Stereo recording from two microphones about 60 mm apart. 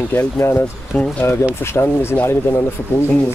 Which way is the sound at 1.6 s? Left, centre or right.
Left.